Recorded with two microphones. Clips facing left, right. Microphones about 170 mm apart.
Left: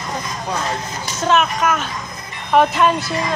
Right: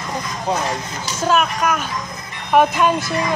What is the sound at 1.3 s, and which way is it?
Speech, centre (ahead or behind).